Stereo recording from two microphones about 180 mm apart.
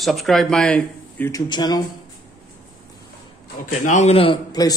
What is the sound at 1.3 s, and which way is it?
Speech, 25° left (ahead or behind).